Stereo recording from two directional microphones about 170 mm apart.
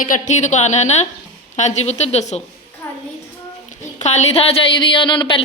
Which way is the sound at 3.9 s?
40° left (ahead or behind).